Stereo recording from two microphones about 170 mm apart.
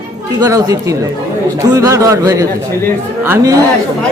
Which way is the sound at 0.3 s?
20° right (ahead or behind).